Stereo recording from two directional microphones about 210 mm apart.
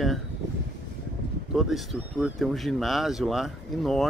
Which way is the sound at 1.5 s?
Centre (ahead or behind).